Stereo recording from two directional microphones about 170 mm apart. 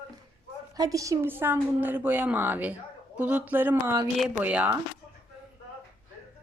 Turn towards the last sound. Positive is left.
turn(degrees=-10)  # may be behind; listen again after turning